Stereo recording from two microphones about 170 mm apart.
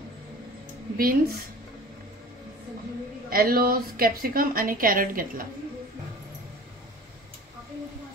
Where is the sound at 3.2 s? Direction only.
60° right (ahead or behind).